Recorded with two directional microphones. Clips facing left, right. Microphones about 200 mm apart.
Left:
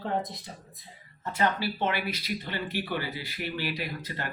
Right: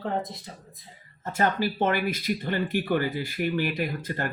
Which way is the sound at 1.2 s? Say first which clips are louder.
Right 3 dB; 45° right (ahead or behind).